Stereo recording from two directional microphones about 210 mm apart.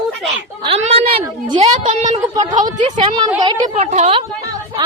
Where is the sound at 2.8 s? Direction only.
35° right (ahead or behind).